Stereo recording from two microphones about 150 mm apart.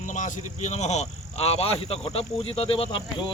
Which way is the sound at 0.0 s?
55° left (ahead or behind).